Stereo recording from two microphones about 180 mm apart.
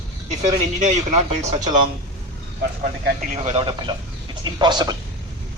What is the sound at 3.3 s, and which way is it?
A man's voice, 35° right (ahead or behind).